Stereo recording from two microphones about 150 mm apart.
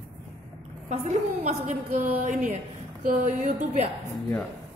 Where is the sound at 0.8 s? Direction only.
50° right (ahead or behind).